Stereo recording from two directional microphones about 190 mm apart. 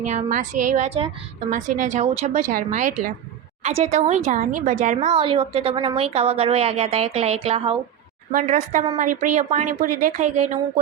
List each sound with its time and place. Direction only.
0.0 s a woman's voice: 40° right (ahead or behind)
8.3 s a woman's voice: 45° right (ahead or behind)